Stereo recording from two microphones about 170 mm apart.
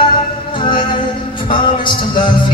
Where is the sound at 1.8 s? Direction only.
30° left (ahead or behind).